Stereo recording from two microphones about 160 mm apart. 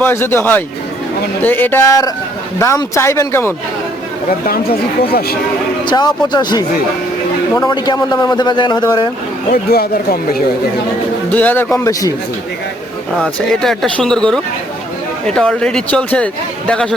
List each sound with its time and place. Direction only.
0.0 s speech: 15° left (ahead or behind)
5.8 s a man's voice: 30° left (ahead or behind)
9.5 s speech: 70° left (ahead or behind)
11.3 s speech: 10° left (ahead or behind)
13.2 s speech: 5° left (ahead or behind)